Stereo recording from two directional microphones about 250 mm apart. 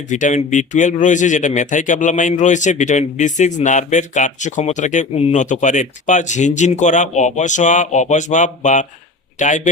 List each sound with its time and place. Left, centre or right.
0.1 s speech: left